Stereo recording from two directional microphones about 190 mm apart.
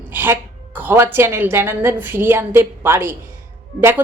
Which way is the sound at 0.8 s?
10° right (ahead or behind).